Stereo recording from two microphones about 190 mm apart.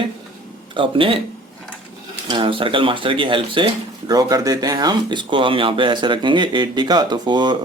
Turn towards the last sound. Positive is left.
turn(degrees=-25)  # may be behind; listen again after turning